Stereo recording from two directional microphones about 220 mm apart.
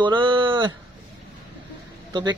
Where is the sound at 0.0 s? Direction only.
20° right (ahead or behind).